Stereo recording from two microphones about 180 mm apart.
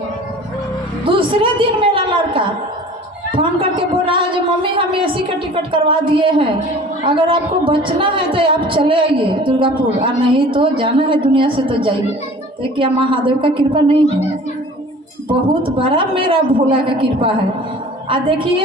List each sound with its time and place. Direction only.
1.0 s a woman's voice: 30° right (ahead or behind)
15.6 s a woman's voice: 30° right (ahead or behind)